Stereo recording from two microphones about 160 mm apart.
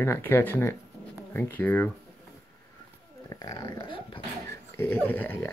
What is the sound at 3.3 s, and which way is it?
Speech, 25° left (ahead or behind).